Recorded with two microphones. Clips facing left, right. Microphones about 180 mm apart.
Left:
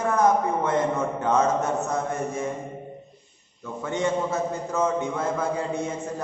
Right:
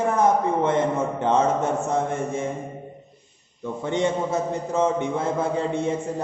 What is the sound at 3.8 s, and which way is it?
A man's voice, 20° right (ahead or behind).